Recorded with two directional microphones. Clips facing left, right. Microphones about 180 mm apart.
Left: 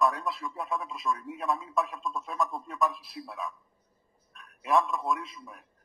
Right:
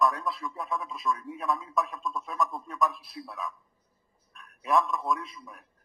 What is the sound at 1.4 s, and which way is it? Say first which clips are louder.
Speech: even; 25° left (ahead or behind).